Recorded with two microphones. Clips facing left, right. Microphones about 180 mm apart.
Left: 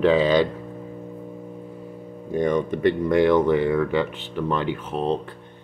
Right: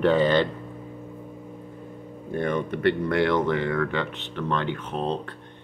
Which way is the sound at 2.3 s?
15° left (ahead or behind).